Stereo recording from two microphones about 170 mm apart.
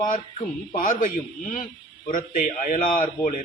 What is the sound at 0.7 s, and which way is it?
Speech, 50° left (ahead or behind).